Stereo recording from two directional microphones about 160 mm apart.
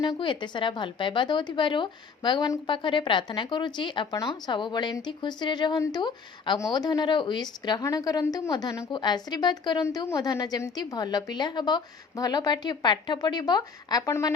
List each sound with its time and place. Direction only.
0.0 s a woman's voice: 30° left (ahead or behind)